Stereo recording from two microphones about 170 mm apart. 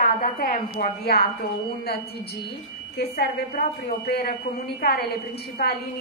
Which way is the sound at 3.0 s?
70° left (ahead or behind).